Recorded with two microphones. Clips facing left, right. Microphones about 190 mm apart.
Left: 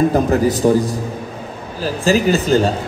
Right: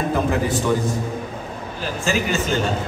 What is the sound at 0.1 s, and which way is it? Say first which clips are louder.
Speech: left 5 dB; 40° left (ahead or behind).